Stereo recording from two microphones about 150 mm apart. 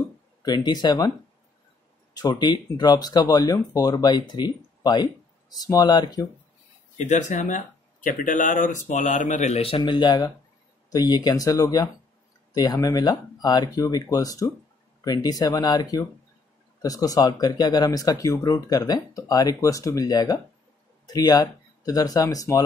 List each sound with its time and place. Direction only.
0.4 s speech: 30° left (ahead or behind)
2.1 s speech: 30° left (ahead or behind)
7.0 s speech: 55° left (ahead or behind); by 22.6 s 25° left (ahead or behind)